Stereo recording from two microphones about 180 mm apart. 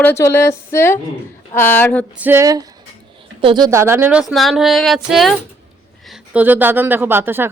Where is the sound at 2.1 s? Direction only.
10° right (ahead or behind).